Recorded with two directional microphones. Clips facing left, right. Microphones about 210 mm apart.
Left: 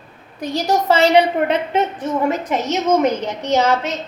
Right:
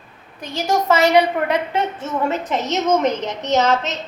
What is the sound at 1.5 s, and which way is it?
A woman's voice, 20° left (ahead or behind).